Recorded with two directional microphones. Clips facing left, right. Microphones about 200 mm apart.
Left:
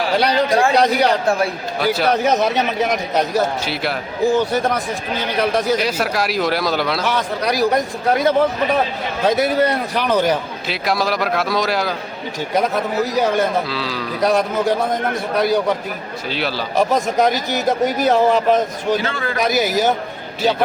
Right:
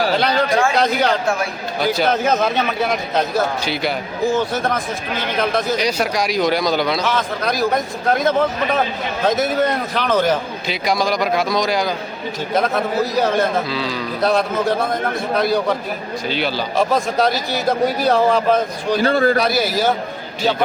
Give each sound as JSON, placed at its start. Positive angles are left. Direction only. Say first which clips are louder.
{"t": 0.2, "sound": "a man's voice", "louder": "left 1 dB", "side_deg": 10}
{"t": 0.5, "sound": "a man's voice", "louder": "left 2 dB", "side_deg": 35}
{"t": 0.8, "sound": "a man's voice", "louder": "left 2 dB", "side_deg": 15}
{"t": 1.8, "sound": "a man's voice", "louder": "even", "side_deg": 0}
{"t": 2.2, "sound": "a man's voice", "louder": "left 1 dB", "side_deg": 15}
{"t": 7.0, "sound": "a man's voice", "louder": "even", "side_deg": 15}
{"t": 10.7, "sound": "a man's voice", "louder": "right 1 dB", "side_deg": 0}
{"t": 12.5, "sound": "a man's voice", "louder": "even", "side_deg": 15}
{"t": 13.7, "sound": "a man's voice", "louder": "right 1 dB", "side_deg": 0}
{"t": 14.2, "sound": "a man's voice", "louder": "left 1 dB", "side_deg": 15}
{"t": 16.3, "sound": "a man's voice", "louder": "right 1 dB", "side_deg": 0}
{"t": 16.7, "sound": "a man's voice", "louder": "left 2 dB", "side_deg": 15}
{"t": 19.0, "sound": "a man's voice", "louder": "right 9 dB", "side_deg": -40}
{"t": 19.4, "sound": "a man's voice", "louder": "left 1 dB", "side_deg": 15}